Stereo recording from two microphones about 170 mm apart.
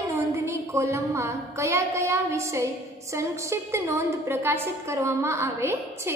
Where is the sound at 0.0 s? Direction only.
20° right (ahead or behind).